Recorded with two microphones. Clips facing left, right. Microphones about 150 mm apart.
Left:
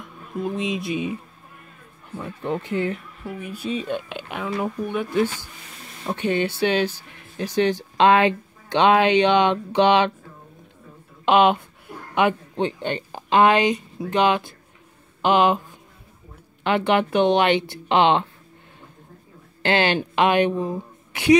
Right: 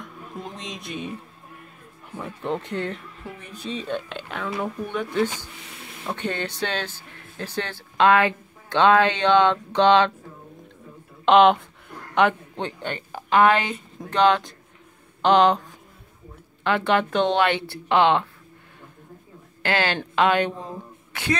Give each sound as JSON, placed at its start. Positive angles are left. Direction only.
{"t": 0.0, "sound": "speech", "side_deg": 5}
{"t": 2.1, "sound": "speech", "side_deg": 0}
{"t": 11.2, "sound": "speech", "side_deg": 5}
{"t": 16.6, "sound": "speech", "side_deg": 20}
{"t": 19.6, "sound": "a woman's voice", "side_deg": 20}